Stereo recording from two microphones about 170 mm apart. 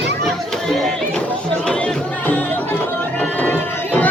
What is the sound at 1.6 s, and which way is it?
Music, 5° left (ahead or behind).